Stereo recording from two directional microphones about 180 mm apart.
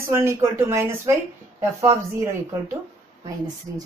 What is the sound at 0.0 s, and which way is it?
A woman's voice, 15° right (ahead or behind).